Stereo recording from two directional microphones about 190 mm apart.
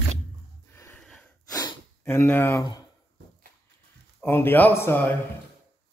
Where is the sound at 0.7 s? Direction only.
10° left (ahead or behind).